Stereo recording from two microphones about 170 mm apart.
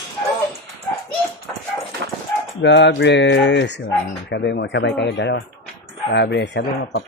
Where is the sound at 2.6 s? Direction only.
90° left.